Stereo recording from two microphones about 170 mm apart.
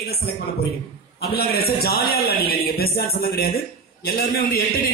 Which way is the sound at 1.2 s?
65° left (ahead or behind).